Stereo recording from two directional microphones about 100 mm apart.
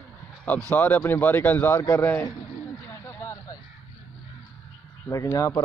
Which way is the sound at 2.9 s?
25° left (ahead or behind).